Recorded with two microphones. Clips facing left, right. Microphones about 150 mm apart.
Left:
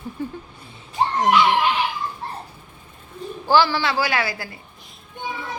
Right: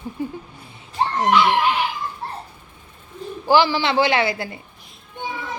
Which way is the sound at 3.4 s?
15° right (ahead or behind).